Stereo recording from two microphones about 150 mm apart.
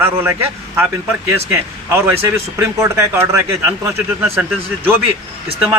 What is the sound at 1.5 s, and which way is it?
Speech, 15° right (ahead or behind).